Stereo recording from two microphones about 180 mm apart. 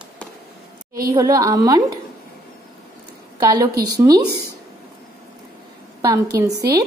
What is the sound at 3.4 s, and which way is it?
Speech, 20° right (ahead or behind).